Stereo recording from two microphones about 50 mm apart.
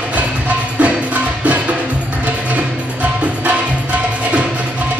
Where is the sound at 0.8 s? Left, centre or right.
Right.